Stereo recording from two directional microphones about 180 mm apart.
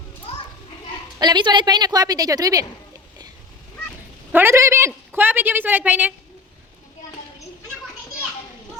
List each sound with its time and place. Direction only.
1.2 s a woman's voice: 25° right (ahead or behind)
4.3 s a woman's voice: 10° right (ahead or behind)